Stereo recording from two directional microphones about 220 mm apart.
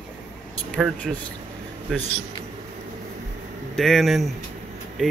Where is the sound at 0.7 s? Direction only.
Centre (ahead or behind).